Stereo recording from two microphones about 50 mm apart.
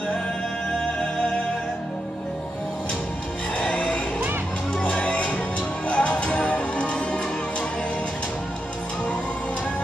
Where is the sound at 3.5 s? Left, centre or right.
Left.